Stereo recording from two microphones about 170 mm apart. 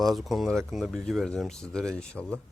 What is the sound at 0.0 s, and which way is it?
Speech, centre (ahead or behind).